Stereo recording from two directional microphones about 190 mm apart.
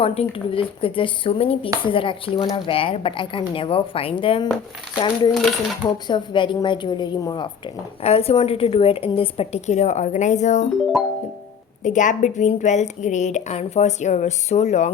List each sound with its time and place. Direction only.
0.0 s speech: 30° left (ahead or behind)
5.3 s speech: centre (ahead or behind)
6.1 s a woman's voice: 25° left (ahead or behind)
11.8 s a woman's voice: 40° left (ahead or behind)